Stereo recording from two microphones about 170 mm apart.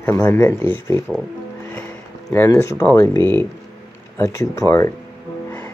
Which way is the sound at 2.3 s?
15° left (ahead or behind).